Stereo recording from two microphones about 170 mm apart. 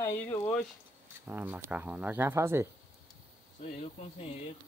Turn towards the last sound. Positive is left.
turn(degrees=35)  # may be behind; listen again after turning